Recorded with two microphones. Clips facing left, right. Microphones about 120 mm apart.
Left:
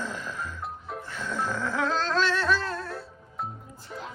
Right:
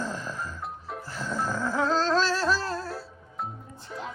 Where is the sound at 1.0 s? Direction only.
35° right (ahead or behind).